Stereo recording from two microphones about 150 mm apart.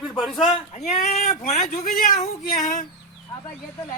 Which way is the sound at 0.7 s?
50° left (ahead or behind).